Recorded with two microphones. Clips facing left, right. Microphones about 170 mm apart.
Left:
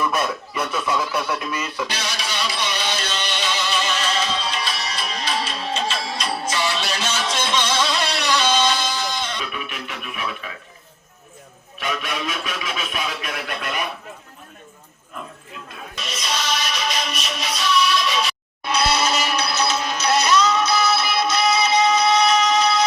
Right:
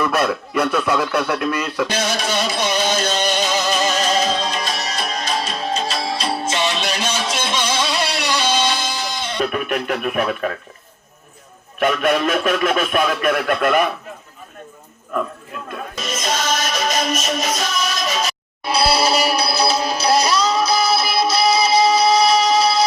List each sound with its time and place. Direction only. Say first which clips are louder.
0.0 s speech: right 4 dB; 65° right (ahead or behind)
1.9 s music: right 8 dB; 50° right (ahead or behind); by 9.3 s 10° right (ahead or behind)
9.4 s speech: right 10 dB; 50° right (ahead or behind)
11.8 s speech: right 10 dB; 55° right (ahead or behind)
15.1 s music: right 11 dB; 60° right (ahead or behind); by 22.8 s 30° right (ahead or behind)